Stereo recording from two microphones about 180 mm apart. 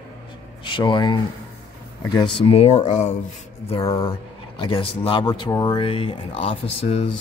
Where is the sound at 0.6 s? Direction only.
25° left (ahead or behind).